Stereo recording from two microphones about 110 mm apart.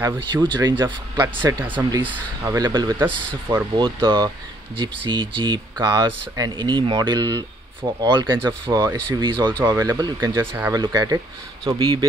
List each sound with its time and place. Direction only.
0.4 s speech: 40° right (ahead or behind)
2.0 s speech: 30° right (ahead or behind)
3.0 s speech: 20° right (ahead or behind)
3.7 s speech: 45° right (ahead or behind)